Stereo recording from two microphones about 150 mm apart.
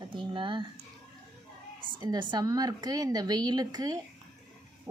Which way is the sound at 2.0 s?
30° right (ahead or behind).